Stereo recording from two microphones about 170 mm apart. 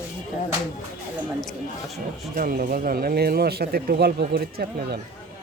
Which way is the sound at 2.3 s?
60° right (ahead or behind).